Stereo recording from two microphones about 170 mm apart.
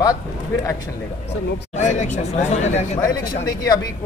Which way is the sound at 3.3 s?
20° left (ahead or behind).